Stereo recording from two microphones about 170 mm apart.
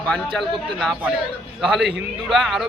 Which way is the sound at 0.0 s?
5° left (ahead or behind).